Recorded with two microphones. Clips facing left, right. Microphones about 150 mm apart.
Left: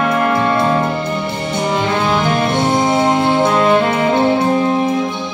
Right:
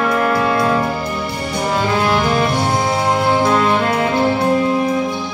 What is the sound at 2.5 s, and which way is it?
Music, 20° left (ahead or behind).